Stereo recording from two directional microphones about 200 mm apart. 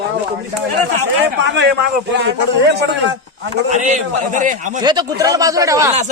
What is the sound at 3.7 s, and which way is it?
A man's voice, 40° right (ahead or behind).